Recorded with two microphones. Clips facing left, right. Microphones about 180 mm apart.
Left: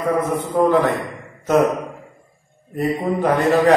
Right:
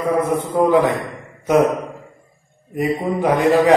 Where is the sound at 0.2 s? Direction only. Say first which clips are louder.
Right 1 dB; 15° right (ahead or behind).